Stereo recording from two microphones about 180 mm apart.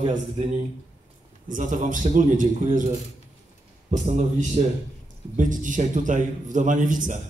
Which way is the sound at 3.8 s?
40° right (ahead or behind).